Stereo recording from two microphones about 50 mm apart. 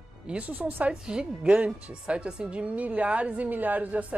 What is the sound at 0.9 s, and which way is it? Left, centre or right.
A woman's voice, centre.